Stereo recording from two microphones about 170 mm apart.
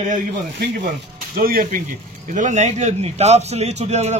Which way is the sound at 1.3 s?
55° right (ahead or behind).